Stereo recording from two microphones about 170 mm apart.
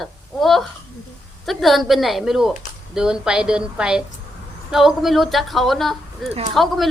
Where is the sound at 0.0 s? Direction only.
Centre (ahead or behind).